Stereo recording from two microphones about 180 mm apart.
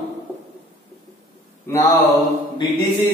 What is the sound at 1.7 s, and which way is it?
Mantra, 10° left (ahead or behind).